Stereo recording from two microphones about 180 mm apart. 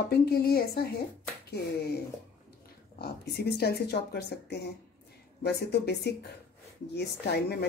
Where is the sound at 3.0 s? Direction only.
60° left (ahead or behind).